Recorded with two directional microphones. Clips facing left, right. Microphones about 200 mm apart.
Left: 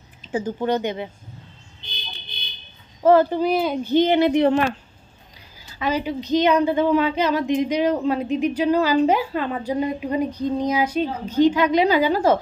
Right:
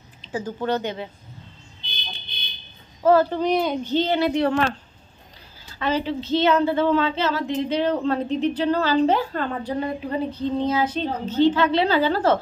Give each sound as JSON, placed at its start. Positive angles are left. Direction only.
{"t": 0.3, "sound": "a woman's voice", "side_deg": 15}
{"t": 3.0, "sound": "a woman's voice", "side_deg": 20}
{"t": 3.9, "sound": "a woman's voice", "side_deg": 15}
{"t": 5.8, "sound": "a woman's voice", "side_deg": 10}